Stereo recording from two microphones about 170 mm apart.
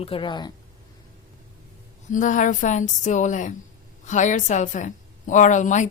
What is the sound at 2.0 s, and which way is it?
Speech, 50° left (ahead or behind).